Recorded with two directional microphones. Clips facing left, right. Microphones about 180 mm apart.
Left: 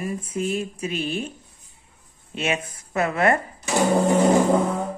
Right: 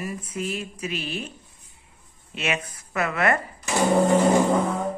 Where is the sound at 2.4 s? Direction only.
25° left (ahead or behind).